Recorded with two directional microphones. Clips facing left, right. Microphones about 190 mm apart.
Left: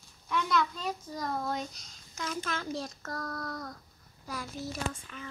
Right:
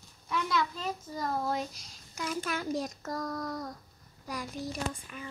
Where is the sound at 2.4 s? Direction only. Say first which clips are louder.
Right 3 dB; 15° right (ahead or behind).